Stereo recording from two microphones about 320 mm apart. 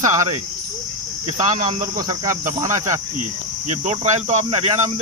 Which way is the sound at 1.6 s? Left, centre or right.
Centre.